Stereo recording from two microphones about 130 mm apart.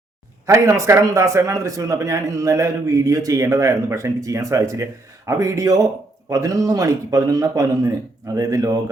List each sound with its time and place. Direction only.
0.4 s a man's voice: 25° right (ahead or behind)